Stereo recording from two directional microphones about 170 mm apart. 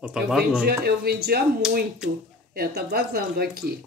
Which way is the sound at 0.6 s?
65° right (ahead or behind).